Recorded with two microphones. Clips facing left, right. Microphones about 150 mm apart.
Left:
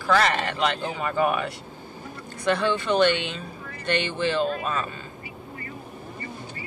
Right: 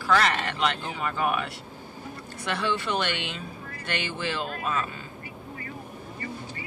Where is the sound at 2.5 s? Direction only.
5° right (ahead or behind).